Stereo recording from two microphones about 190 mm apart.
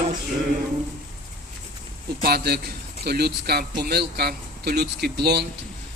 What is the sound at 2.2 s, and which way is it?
A man's voice, 55° right (ahead or behind).